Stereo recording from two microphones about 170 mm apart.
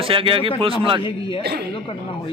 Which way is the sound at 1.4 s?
70° right (ahead or behind).